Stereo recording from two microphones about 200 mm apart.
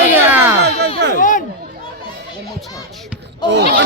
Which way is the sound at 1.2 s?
40° left (ahead or behind).